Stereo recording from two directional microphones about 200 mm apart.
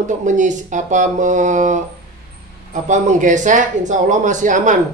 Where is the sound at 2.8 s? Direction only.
40° right (ahead or behind).